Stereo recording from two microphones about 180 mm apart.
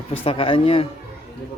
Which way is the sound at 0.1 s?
30° left (ahead or behind).